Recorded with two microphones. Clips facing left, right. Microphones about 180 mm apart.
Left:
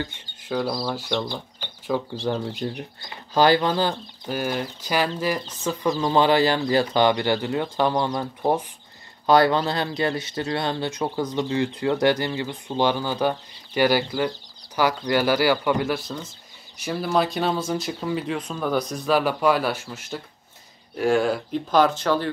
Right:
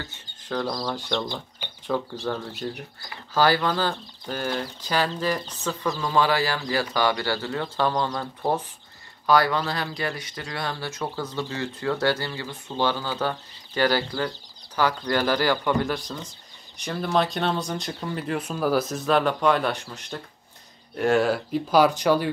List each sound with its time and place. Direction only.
0.0 s speech: 10° left (ahead or behind)
9.2 s speech: 25° left (ahead or behind); by 22.3 s 15° right (ahead or behind)